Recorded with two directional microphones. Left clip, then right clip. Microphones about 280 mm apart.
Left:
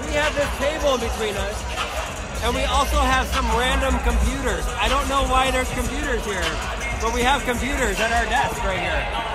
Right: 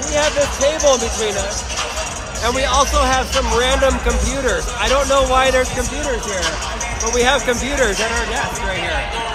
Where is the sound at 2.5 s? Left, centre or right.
Centre.